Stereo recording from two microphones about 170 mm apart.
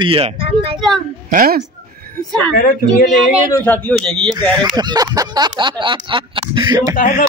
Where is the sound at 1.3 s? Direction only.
55° right (ahead or behind).